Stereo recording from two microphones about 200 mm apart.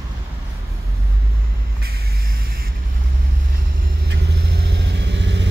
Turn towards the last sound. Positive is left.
turn(degrees=-60)  # may be behind; listen again after turning